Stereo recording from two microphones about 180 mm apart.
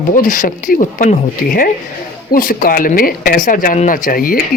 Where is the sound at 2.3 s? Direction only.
50° left (ahead or behind).